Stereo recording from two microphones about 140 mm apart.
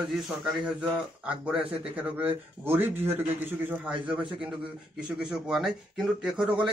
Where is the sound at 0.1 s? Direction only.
5° right (ahead or behind).